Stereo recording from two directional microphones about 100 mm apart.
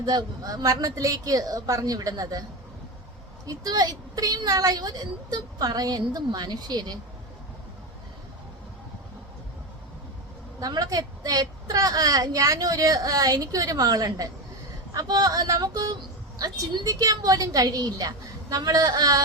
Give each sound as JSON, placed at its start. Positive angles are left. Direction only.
{"t": 0.0, "sound": "a woman's voice", "side_deg": -40}
{"t": 3.4, "sound": "a woman's voice", "side_deg": -40}
{"t": 10.6, "sound": "a woman's voice", "side_deg": -40}
{"t": 16.8, "sound": "a woman's voice", "side_deg": -35}